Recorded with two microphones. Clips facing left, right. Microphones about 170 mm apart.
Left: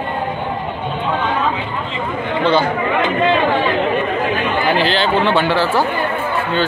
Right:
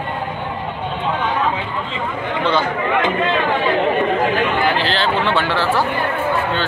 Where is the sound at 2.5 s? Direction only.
30° left (ahead or behind).